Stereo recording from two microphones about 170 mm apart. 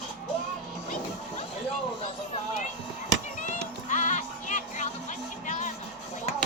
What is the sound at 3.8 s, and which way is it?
Music, 50° left (ahead or behind).